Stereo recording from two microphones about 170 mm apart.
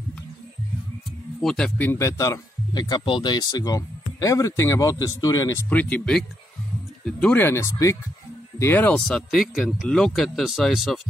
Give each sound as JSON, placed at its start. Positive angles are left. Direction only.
{"t": 1.4, "sound": "speech", "side_deg": 5}
{"t": 5.7, "sound": "speech", "side_deg": 10}